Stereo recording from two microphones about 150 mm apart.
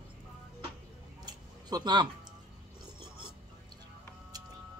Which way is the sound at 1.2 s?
30° right (ahead or behind).